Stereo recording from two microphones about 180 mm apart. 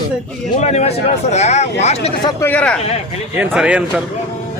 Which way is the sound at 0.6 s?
35° left (ahead or behind).